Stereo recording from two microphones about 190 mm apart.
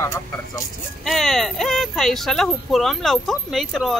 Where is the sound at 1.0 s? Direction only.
Centre (ahead or behind).